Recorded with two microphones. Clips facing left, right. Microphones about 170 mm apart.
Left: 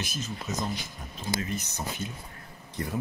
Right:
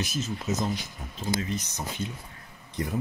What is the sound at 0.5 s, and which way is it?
Speech, 25° right (ahead or behind).